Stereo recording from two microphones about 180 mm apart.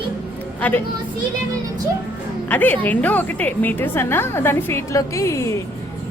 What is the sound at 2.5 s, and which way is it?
A woman's voice, 10° left (ahead or behind).